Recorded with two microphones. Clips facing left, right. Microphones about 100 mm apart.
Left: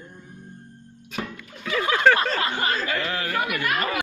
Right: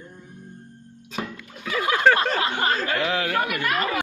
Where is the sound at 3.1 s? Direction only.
90° right.